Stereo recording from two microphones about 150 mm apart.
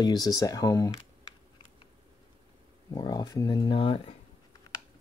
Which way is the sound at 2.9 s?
25° left (ahead or behind).